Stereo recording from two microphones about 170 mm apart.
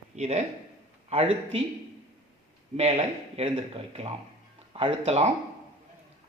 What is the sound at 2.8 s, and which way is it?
Speech, 35° right (ahead or behind).